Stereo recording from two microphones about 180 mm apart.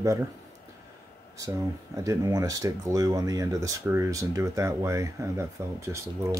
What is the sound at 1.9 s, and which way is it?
Speech, 15° right (ahead or behind).